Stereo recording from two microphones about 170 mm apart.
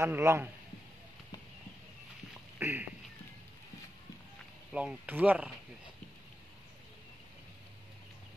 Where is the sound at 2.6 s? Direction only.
15° right (ahead or behind).